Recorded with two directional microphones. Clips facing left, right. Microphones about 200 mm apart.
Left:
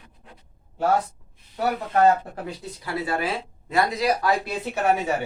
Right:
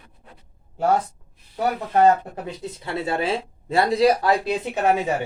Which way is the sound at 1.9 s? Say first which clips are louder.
Right 2 dB; 20° right (ahead or behind).